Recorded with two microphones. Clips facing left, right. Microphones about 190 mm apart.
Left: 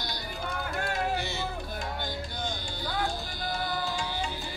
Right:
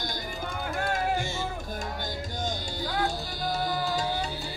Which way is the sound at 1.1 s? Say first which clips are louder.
Right 2 dB; 45° right (ahead or behind).